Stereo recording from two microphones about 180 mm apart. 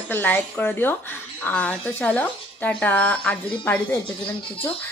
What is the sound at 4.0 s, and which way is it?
Speech, 30° left (ahead or behind).